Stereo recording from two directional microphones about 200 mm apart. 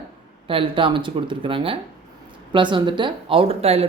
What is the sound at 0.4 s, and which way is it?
Speech, 25° right (ahead or behind).